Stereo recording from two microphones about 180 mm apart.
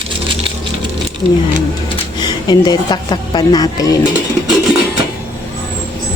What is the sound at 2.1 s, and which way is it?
A woman's voice, 25° left (ahead or behind).